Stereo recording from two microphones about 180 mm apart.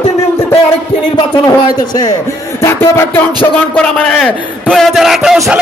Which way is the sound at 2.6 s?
15° left (ahead or behind).